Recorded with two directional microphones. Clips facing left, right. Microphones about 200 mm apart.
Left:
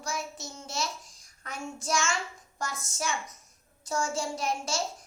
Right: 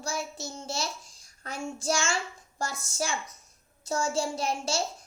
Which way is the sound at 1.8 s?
30° right (ahead or behind).